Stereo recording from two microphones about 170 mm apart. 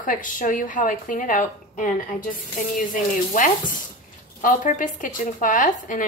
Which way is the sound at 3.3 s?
50° left (ahead or behind).